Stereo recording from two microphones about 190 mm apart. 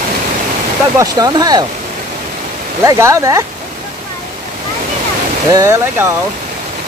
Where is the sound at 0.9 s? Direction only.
20° right (ahead or behind).